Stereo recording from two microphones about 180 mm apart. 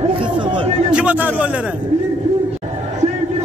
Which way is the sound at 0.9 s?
5° right (ahead or behind).